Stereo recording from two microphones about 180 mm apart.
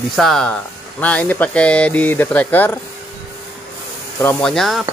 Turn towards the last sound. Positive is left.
turn(degrees=0)  # may be behind; listen again after turning